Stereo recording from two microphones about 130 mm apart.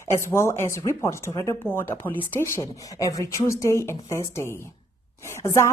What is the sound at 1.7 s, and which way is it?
A woman's voice, 15° left (ahead or behind).